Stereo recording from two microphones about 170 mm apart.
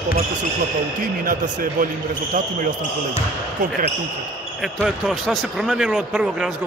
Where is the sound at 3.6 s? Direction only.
50° right (ahead or behind).